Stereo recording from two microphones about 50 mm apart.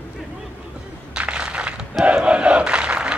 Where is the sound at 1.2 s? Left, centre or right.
Right.